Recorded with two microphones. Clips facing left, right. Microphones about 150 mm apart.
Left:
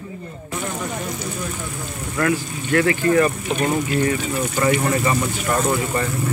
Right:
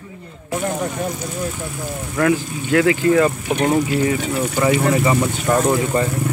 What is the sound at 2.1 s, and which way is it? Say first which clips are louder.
Speech: right 3 dB; 10° right (ahead or behind).